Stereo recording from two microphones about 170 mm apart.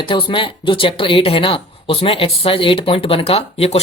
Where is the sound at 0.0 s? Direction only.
30° left (ahead or behind).